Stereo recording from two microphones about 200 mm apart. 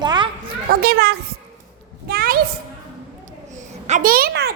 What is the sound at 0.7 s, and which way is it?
Speech, 50° right (ahead or behind).